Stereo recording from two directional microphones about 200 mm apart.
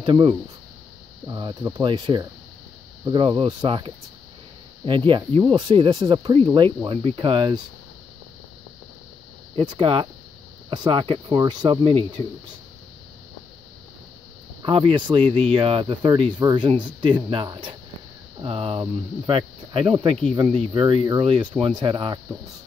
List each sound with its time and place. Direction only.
0.0 s speech: 25° right (ahead or behind)
9.6 s speech: 20° right (ahead or behind)
14.6 s speech: 25° right (ahead or behind)